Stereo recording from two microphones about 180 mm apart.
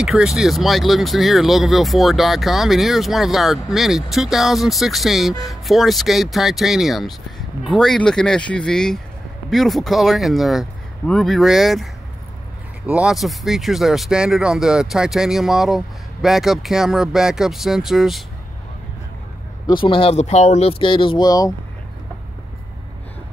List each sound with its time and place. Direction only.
0.0 s speech: centre (ahead or behind)
12.9 s speech: 5° right (ahead or behind)
19.8 s speech: 30° left (ahead or behind)